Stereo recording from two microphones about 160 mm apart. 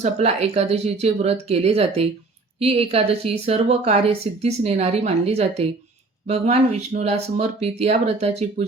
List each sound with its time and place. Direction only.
0.0 s speech: 40° right (ahead or behind)